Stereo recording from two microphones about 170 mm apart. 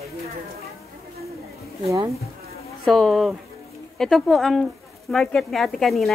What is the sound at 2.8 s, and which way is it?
Speech, centre (ahead or behind).